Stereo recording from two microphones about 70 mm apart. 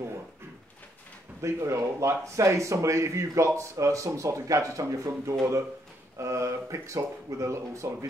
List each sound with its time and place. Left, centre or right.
1.4 s speech: right